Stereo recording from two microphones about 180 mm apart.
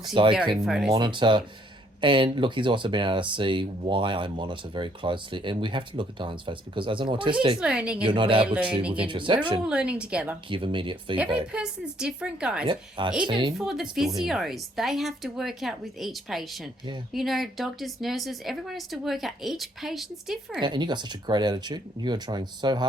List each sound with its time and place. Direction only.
0.1 s speech: 30° right (ahead or behind)
0.5 s speech: 5° right (ahead or behind)
0.9 s speech: 25° right (ahead or behind)
7.6 s speech: 5° right (ahead or behind)
8.0 s speech: 30° right (ahead or behind)
9.6 s a woman's voice: 5° right (ahead or behind)
10.5 s speech: 30° right (ahead or behind)
11.5 s speech: 5° right (ahead or behind)
12.6 s speech: 25° right (ahead or behind)
14.3 s speech: centre (ahead or behind)
20.6 s speech: 25° right (ahead or behind)